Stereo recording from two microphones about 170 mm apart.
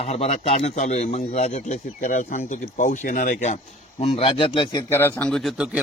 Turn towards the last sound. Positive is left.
turn(degrees=-5)  # may be behind; listen again after turning